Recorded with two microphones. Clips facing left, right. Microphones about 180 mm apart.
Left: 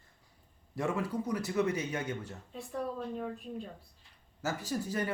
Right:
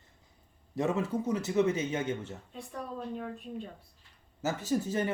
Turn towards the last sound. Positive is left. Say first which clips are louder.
# right 4 dB
turn(degrees=-20)  # may be behind; listen again after turning